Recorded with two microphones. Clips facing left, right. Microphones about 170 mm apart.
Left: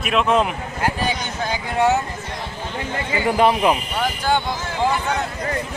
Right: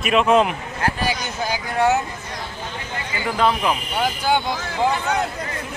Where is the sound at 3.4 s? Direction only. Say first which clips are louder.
Left 3 dB; 15° left (ahead or behind).